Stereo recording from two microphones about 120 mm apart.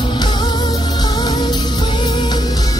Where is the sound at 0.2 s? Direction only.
35° left (ahead or behind).